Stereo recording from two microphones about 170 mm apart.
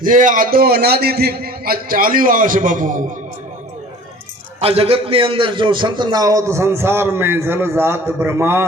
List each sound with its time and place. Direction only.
0.0 s a man's voice: 50° right (ahead or behind)
4.6 s a man's voice: 35° right (ahead or behind); by 8.6 s 15° right (ahead or behind)